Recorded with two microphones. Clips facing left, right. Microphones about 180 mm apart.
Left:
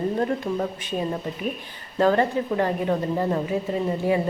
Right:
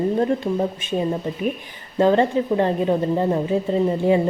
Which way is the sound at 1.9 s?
20° right (ahead or behind).